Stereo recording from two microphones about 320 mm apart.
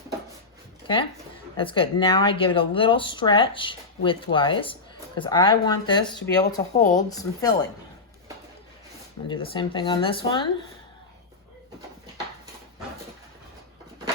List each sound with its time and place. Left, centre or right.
1.5 s speech: centre
9.2 s speech: centre